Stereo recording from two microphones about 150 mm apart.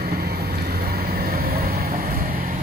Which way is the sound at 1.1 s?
90° right.